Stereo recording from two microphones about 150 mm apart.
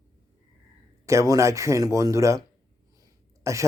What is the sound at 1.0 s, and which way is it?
Speech, 20° right (ahead or behind).